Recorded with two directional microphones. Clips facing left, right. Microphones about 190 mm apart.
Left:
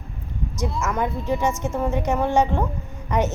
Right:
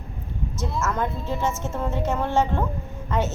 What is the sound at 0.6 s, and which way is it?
A woman's voice, 15° left (ahead or behind).